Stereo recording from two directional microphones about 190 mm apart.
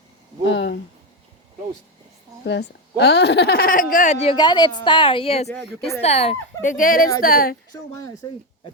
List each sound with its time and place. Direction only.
0.4 s a sound: 70° left (ahead or behind)
2.4 s a woman's voice: 65° left (ahead or behind)
8.2 s speech: 20° left (ahead or behind)